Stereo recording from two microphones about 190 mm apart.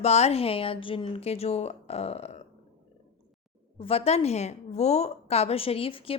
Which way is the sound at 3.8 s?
30° left (ahead or behind).